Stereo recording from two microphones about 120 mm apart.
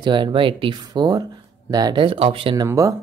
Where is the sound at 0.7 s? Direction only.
35° right (ahead or behind).